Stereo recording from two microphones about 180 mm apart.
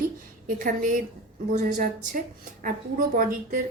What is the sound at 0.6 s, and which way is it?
A woman's voice, 45° right (ahead or behind).